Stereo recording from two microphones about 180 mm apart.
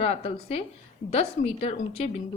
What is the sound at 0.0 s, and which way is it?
Speech, 35° left (ahead or behind).